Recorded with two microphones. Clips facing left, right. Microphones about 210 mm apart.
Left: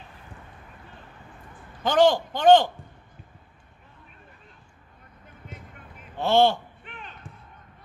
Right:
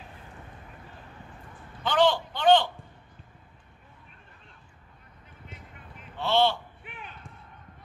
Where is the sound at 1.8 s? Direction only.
45° left (ahead or behind).